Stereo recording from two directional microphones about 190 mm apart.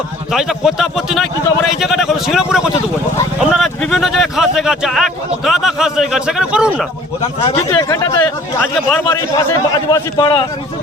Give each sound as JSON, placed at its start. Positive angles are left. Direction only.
{"t": 0.3, "sound": "speech", "side_deg": 0}
{"t": 7.4, "sound": "speech", "side_deg": 15}
{"t": 9.7, "sound": "a man's voice", "side_deg": 20}